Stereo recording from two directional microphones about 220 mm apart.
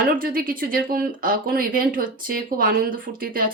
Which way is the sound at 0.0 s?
40° right (ahead or behind).